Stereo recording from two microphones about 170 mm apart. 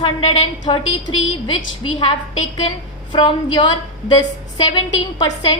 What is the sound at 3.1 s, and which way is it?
A woman's voice, 25° left (ahead or behind).